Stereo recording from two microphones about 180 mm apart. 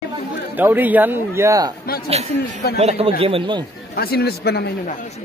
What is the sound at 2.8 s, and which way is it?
Speech, 35° right (ahead or behind).